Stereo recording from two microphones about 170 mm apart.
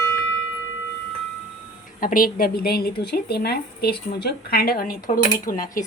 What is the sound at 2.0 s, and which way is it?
A woman's voice, 55° left (ahead or behind).